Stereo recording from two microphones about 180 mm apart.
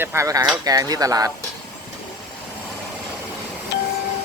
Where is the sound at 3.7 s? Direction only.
70° left (ahead or behind).